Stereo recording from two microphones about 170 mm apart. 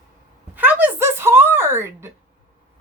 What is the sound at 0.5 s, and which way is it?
Speech, 10° right (ahead or behind).